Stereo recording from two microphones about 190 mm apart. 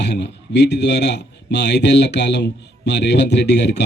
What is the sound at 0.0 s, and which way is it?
Speech, 65° left (ahead or behind).